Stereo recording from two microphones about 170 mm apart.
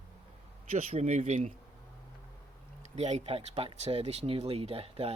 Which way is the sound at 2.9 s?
40° right (ahead or behind).